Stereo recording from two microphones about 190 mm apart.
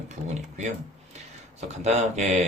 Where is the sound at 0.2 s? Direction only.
40° right (ahead or behind).